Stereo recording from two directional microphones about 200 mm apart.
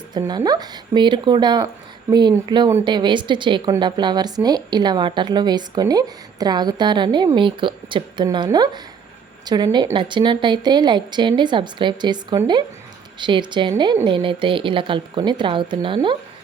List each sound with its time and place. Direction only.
0.1 s a woman's voice: 20° right (ahead or behind)